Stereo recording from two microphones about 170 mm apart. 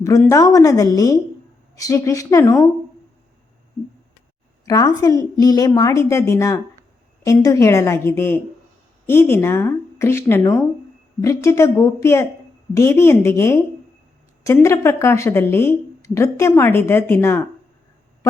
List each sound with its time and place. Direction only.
0.3 s a woman's voice: 20° left (ahead or behind)
4.6 s a woman's voice: 20° left (ahead or behind)